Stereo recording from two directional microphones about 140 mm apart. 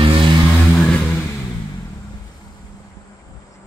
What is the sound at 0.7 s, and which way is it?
Vehicle, 5° left (ahead or behind).